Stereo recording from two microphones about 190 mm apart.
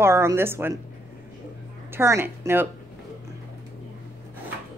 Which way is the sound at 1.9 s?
15° right (ahead or behind).